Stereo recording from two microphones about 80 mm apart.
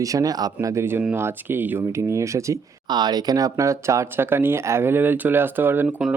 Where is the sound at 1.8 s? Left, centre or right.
Right.